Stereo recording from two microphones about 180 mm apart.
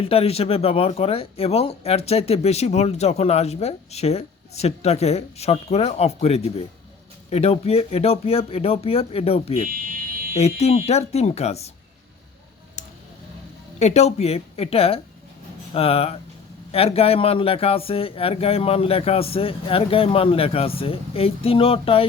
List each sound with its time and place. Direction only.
0.0 s speech: 35° left (ahead or behind)
9.6 s fire alarm: 50° right (ahead or behind)
10.3 s speech: 35° left (ahead or behind)
13.7 s speech: 40° left (ahead or behind)